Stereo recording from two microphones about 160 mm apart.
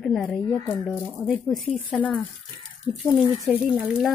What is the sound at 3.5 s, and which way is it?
Speech, 5° right (ahead or behind).